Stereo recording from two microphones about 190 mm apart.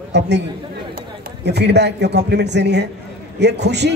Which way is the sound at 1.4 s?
60° right (ahead or behind).